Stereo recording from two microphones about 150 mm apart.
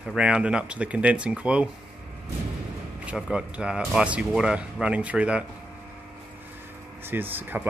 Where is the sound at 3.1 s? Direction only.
5° right (ahead or behind).